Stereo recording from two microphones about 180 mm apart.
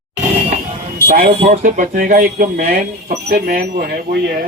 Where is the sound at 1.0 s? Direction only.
55° right (ahead or behind).